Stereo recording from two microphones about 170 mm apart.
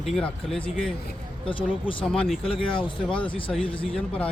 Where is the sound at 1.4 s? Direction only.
30° left (ahead or behind).